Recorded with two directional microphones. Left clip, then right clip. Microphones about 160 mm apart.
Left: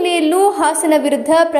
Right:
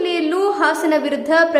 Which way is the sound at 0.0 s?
20° left (ahead or behind).